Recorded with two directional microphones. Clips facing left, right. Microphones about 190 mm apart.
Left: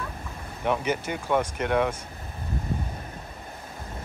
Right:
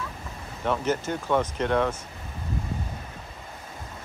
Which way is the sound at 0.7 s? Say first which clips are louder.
Even; 10° left (ahead or behind).